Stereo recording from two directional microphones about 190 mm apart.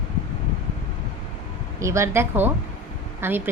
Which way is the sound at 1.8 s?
15° right (ahead or behind).